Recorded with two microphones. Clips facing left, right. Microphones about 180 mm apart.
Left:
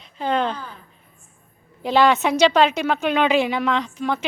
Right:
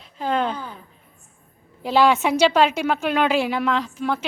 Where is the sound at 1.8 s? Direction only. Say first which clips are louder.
Even; 5° right (ahead or behind).